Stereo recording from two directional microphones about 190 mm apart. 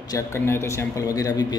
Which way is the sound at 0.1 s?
15° left (ahead or behind).